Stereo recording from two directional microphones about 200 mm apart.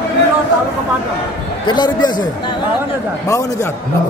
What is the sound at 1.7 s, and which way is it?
Speech, 20° left (ahead or behind).